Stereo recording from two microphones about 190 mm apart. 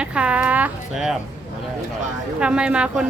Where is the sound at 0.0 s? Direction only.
5° right (ahead or behind).